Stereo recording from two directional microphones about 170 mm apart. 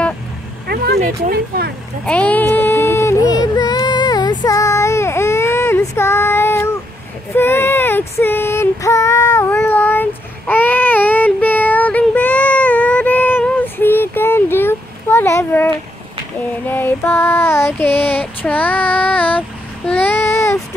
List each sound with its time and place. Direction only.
0.7 s vehicle: 70° right (ahead or behind)
2.0 s a sound: 10° left (ahead or behind)
7.3 s female singing: 15° left (ahead or behind)
16.6 s child singing: 10° left (ahead or behind)